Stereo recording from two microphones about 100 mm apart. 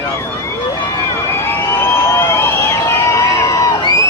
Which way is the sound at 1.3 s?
20° left (ahead or behind).